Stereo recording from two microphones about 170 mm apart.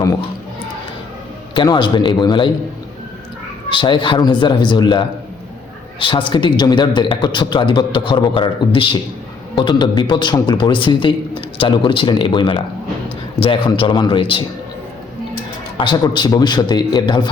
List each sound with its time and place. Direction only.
1.5 s a man's voice: 25° left (ahead or behind)
3.7 s a man's voice: 30° left (ahead or behind)
15.8 s a man's voice: 25° left (ahead or behind)